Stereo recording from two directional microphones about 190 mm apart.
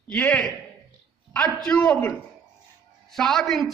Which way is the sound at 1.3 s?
20° right (ahead or behind).